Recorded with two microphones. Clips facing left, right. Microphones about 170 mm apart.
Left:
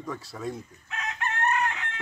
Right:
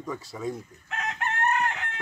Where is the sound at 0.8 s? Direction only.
50° right (ahead or behind).